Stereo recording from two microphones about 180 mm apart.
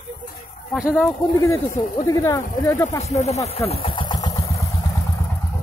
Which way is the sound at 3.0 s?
40° left (ahead or behind).